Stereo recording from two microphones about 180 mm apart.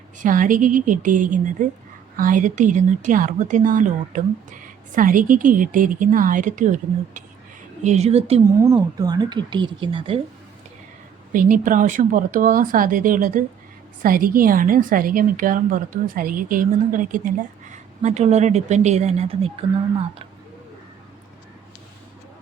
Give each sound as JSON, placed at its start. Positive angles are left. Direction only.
{"t": 0.2, "sound": "a woman's voice", "side_deg": -45}
{"t": 8.6, "sound": "speech", "side_deg": -20}
{"t": 11.3, "sound": "a woman's voice", "side_deg": -50}